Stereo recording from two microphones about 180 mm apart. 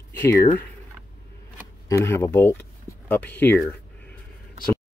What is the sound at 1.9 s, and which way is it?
Speech, 15° left (ahead or behind).